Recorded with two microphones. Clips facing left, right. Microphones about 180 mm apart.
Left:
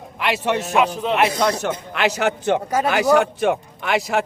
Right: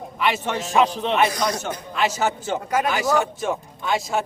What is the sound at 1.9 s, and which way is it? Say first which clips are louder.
A man's voice: left 1 dB; 70° left (ahead or behind).